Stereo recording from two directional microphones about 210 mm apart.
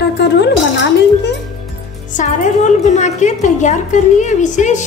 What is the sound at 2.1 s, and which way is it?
A woman's voice, 35° left (ahead or behind).